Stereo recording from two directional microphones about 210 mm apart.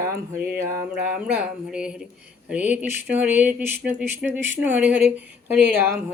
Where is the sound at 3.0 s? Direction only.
5° right (ahead or behind).